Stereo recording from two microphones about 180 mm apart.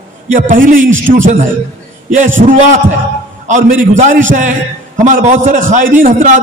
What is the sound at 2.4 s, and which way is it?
A man's voice, 45° right (ahead or behind).